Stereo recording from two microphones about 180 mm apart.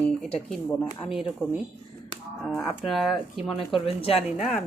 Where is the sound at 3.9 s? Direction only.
30° left (ahead or behind).